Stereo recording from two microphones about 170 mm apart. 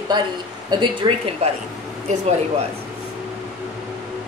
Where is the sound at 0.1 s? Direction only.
25° right (ahead or behind).